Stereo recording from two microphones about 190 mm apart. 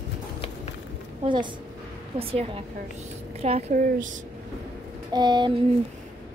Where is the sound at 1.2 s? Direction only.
25° right (ahead or behind).